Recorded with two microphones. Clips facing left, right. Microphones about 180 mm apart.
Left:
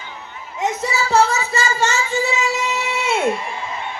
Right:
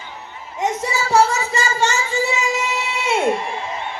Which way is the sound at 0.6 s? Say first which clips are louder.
Even; 15° right (ahead or behind).